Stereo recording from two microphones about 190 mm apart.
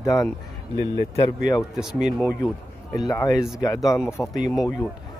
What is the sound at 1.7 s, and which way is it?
Speech, centre (ahead or behind).